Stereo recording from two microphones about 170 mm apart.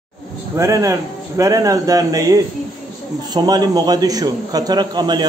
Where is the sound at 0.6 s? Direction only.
20° right (ahead or behind).